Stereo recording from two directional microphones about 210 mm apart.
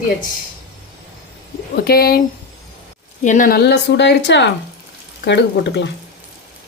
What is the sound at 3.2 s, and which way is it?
Speech, 40° left (ahead or behind).